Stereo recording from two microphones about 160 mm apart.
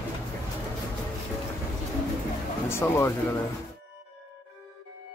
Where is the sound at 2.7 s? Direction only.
15° left (ahead or behind).